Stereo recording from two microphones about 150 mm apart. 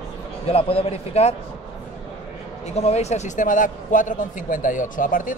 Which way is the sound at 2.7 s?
45° left (ahead or behind).